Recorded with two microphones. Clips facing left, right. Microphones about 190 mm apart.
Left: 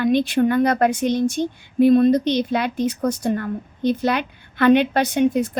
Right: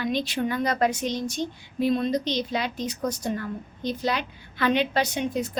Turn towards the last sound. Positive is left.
turn(degrees=55)  # may be behind; listen again after turning